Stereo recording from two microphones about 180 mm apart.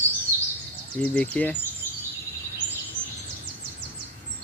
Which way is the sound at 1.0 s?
5° left (ahead or behind).